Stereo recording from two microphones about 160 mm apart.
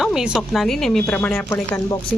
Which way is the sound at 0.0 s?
5° right (ahead or behind).